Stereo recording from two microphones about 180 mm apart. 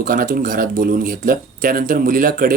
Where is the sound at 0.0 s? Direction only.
50° right (ahead or behind).